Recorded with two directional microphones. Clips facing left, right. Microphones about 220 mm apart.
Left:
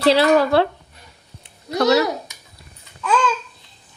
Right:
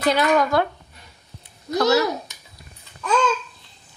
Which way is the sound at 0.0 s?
30° left (ahead or behind).